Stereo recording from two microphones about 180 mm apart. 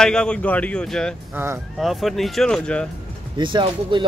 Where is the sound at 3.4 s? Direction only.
25° right (ahead or behind).